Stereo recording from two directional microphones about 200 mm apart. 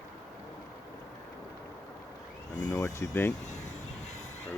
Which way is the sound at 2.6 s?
15° left (ahead or behind).